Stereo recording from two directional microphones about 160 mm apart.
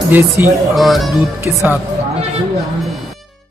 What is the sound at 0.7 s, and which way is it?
Music, centre (ahead or behind).